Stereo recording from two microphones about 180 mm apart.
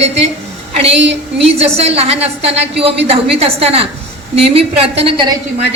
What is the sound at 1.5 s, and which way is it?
A woman's voice, 35° right (ahead or behind).